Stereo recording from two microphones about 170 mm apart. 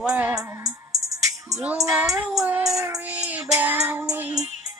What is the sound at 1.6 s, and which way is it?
Music, 10° right (ahead or behind).